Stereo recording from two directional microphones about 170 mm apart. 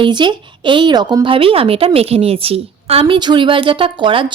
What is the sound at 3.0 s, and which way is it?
A woman's voice, 25° right (ahead or behind).